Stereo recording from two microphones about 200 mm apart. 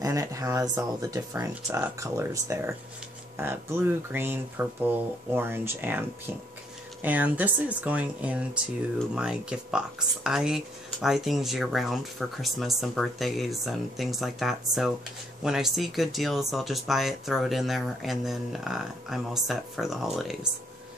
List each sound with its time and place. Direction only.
0.0 s speech: 15° right (ahead or behind)